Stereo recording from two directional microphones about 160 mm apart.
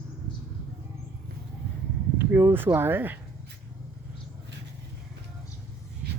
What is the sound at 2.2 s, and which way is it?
Speech, 15° right (ahead or behind).